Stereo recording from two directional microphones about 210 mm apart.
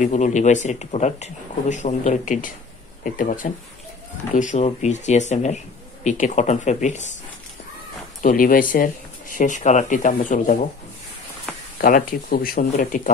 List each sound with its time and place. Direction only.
0.0 s speech: 35° left (ahead or behind)
8.2 s speech: 40° left (ahead or behind)
11.8 s speech: 40° left (ahead or behind)